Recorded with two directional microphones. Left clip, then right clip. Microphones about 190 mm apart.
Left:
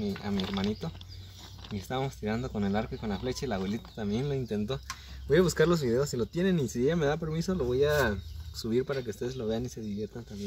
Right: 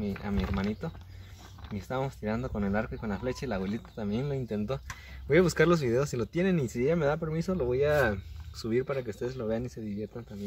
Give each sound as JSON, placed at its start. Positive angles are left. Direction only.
{"t": 0.0, "sound": "speech", "side_deg": -10}
{"t": 5.3, "sound": "speech", "side_deg": -35}